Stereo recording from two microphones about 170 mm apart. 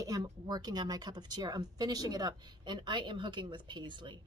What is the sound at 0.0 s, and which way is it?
Speech, 25° right (ahead or behind).